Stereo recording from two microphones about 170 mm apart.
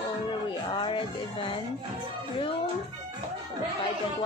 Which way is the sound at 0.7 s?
30° left (ahead or behind).